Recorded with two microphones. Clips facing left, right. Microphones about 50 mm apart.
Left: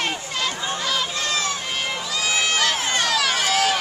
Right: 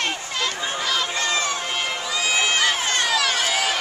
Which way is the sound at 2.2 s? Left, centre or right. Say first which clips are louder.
Right 1 dB; centre.